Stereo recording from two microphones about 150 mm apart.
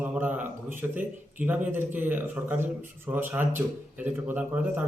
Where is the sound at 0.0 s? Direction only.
10° right (ahead or behind).